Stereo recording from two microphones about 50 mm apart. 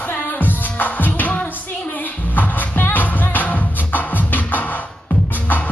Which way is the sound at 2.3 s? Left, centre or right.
Left.